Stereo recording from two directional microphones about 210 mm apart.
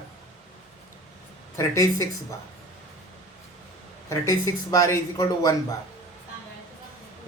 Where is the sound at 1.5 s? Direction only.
15° left (ahead or behind).